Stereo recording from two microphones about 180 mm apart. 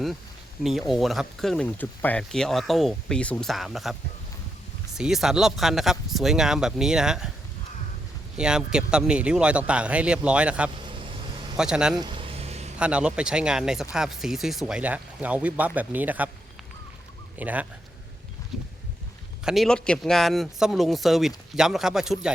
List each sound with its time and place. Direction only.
0.6 s speech: centre (ahead or behind)
4.9 s speech: 5° right (ahead or behind)
8.4 s speech: 5° right (ahead or behind)
10.8 s vehicle: 30° right (ahead or behind)
11.5 s speech: 5° right (ahead or behind)
11.9 s a sound: 25° right (ahead or behind)
12.8 s speech: 5° right (ahead or behind)
17.3 s speech: 10° right (ahead or behind)
19.5 s speech: centre (ahead or behind)